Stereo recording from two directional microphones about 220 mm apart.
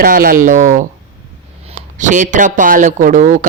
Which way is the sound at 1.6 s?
35° right (ahead or behind).